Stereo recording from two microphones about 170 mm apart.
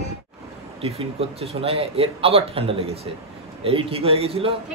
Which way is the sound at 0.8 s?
35° right (ahead or behind).